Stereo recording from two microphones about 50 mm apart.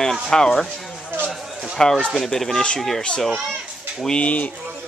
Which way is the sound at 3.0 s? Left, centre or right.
Centre.